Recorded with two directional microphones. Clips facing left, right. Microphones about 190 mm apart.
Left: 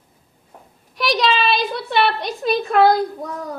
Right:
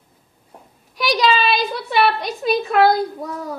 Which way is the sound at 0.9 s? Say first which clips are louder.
Right 1 dB; centre (ahead or behind).